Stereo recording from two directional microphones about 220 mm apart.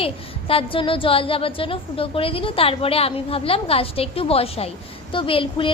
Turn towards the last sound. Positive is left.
turn(degrees=25)  # may be behind; listen again after turning